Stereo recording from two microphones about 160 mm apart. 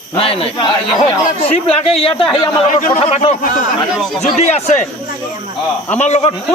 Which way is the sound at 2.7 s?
50° left (ahead or behind).